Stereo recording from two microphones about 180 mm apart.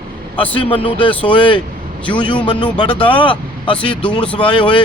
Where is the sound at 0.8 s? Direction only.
30° left (ahead or behind).